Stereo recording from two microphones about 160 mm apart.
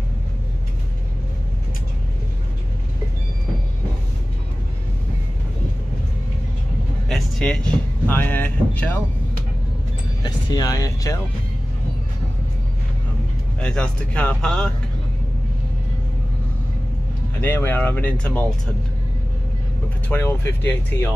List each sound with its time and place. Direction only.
7.1 s speech: centre (ahead or behind)
10.2 s speech: 25° left (ahead or behind)
13.6 s speech: 5° left (ahead or behind)
17.4 s speech: 15° left (ahead or behind)
20.1 s speech: 15° left (ahead or behind)